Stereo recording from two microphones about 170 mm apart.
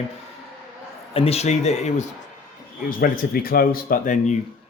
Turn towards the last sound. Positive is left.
turn(degrees=50)  # may be behind; listen again after turning